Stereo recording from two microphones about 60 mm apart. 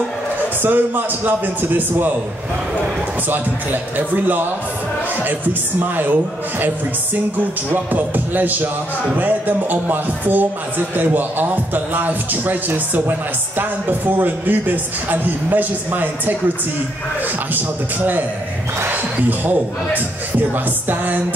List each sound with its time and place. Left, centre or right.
0.6 s a man's voice: right
3.3 s a man's voice: right
7.7 s a man's voice: right
17.6 s a man's voice: right